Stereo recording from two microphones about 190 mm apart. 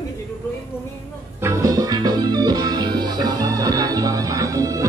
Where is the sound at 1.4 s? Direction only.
15° right (ahead or behind).